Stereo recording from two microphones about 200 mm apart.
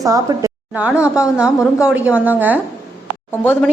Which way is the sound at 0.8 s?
5° right (ahead or behind).